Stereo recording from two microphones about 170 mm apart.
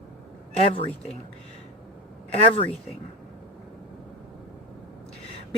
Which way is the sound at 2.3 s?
35° left (ahead or behind).